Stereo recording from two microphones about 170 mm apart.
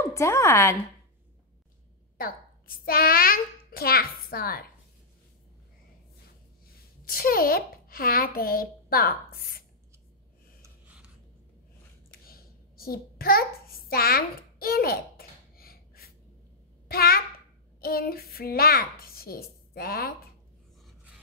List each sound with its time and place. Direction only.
0.1 s speech: 20° left (ahead or behind)
2.1 s a child's voice: 60° left (ahead or behind)
7.1 s a child's voice: 60° left (ahead or behind)
10.6 s gasp: 10° right (ahead or behind)
12.1 s a sound: 60° left (ahead or behind)
16.8 s a child's voice: 65° left (ahead or behind)